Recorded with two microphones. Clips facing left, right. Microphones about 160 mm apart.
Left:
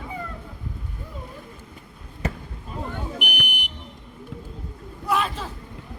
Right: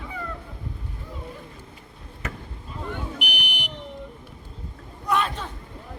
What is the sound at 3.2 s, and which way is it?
Smoke detector, 55° left (ahead or behind).